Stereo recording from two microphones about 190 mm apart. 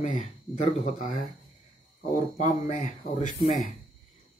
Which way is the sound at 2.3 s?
35° left (ahead or behind).